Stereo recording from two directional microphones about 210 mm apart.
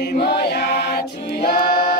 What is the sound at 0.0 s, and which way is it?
Choir, 50° left (ahead or behind).